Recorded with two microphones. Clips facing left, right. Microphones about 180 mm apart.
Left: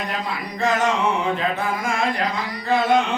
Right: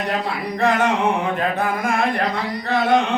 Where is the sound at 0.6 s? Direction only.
60° right (ahead or behind).